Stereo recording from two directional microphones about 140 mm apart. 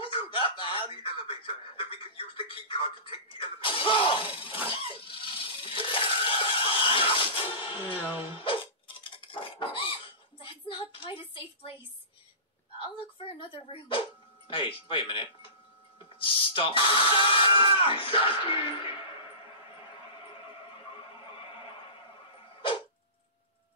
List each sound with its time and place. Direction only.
0.0 s a sound: 40° left (ahead or behind)
8.4 s dishes: 40° left (ahead or behind)
12.7 s dog: 40° left (ahead or behind)
14.5 s speech: 35° left (ahead or behind)